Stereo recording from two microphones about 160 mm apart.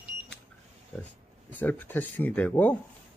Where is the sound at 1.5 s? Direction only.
10° left (ahead or behind).